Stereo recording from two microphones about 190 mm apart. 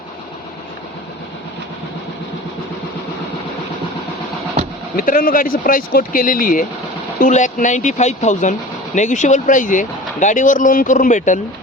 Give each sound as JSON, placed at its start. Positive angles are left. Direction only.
{"t": 4.9, "sound": "speech", "side_deg": 45}